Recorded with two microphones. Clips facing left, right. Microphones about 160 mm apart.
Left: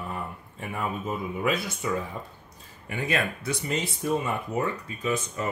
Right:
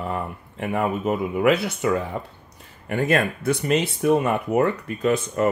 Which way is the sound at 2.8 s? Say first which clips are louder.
Right 7 dB; 55° right (ahead or behind).